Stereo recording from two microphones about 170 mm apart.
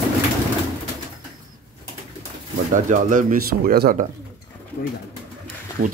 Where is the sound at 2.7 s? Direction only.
50° right (ahead or behind).